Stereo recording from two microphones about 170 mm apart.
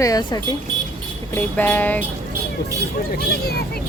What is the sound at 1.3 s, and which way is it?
Speech, 10° left (ahead or behind).